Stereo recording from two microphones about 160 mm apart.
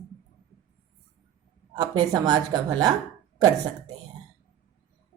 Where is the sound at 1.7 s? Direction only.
25° right (ahead or behind).